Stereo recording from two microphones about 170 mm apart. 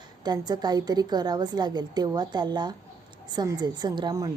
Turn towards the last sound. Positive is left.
turn(degrees=-25)  # may be behind; listen again after turning